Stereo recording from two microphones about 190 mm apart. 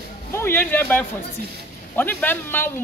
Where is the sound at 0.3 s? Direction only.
15° left (ahead or behind).